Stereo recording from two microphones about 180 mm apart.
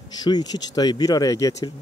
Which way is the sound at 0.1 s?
25° left (ahead or behind).